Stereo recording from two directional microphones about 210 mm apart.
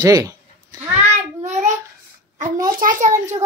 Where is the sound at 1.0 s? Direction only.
35° right (ahead or behind).